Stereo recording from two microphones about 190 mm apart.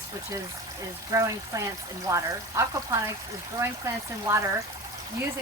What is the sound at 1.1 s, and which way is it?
Speech, 15° right (ahead or behind).